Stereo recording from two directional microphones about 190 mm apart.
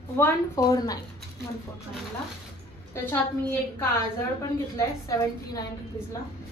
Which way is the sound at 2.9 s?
10° left (ahead or behind).